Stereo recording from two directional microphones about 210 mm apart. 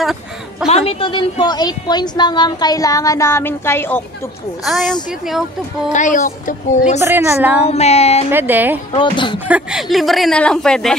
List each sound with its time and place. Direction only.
0.0 s a sound: centre (ahead or behind)
0.7 s a woman's voice: 30° left (ahead or behind); by 4.9 s centre (ahead or behind)
5.9 s a woman's voice: 35° left (ahead or behind)
7.0 s a woman's voice: 10° right (ahead or behind)
7.6 s a woman's voice: 30° left (ahead or behind)
8.3 s a woman's voice: 10° right (ahead or behind)
8.9 s a woman's voice: 25° left (ahead or behind)
9.5 s a woman's voice: 5° right (ahead or behind)